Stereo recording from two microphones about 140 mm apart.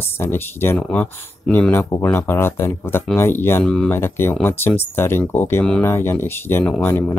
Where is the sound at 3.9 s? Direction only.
15° left (ahead or behind).